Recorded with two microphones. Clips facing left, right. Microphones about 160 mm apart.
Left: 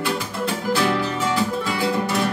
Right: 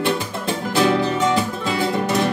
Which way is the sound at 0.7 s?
20° right (ahead or behind).